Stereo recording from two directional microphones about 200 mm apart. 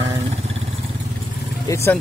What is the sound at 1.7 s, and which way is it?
Speech, 15° left (ahead or behind).